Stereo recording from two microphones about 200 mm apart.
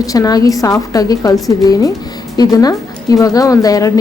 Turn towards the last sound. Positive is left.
turn(degrees=15)  # may be behind; listen again after turning